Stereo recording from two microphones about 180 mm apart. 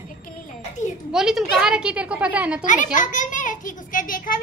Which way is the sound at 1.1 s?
5° right (ahead or behind).